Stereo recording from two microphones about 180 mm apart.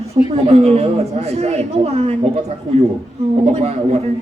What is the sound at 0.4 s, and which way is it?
A man's voice, 35° right (ahead or behind).